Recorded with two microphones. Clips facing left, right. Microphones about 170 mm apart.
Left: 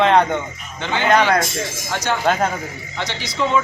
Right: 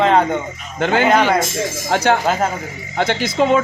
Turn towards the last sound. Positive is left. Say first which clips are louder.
# right 5 dB
turn(degrees=-50)  # may be behind; listen again after turning